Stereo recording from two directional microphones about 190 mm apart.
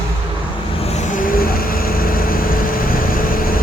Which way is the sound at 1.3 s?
50° left (ahead or behind).